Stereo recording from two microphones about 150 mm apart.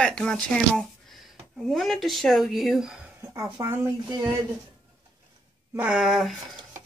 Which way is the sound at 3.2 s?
20° right (ahead or behind).